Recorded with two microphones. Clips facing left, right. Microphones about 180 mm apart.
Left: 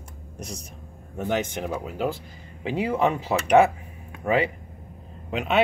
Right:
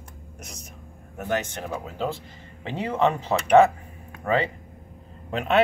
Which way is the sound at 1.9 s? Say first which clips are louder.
Left 2 dB; 10° left (ahead or behind).